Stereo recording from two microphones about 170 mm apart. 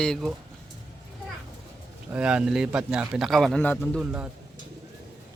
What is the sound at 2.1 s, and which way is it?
A man's voice, 5° right (ahead or behind).